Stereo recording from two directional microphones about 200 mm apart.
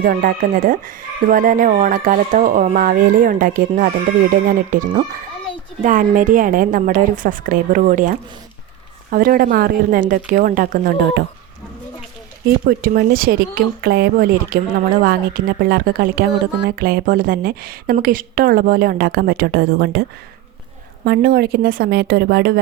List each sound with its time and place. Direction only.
0.0 s a woman's voice: 45° right (ahead or behind)
12.6 s a woman's voice: 50° right (ahead or behind)